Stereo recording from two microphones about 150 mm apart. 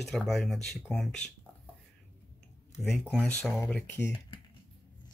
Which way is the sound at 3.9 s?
15° left (ahead or behind).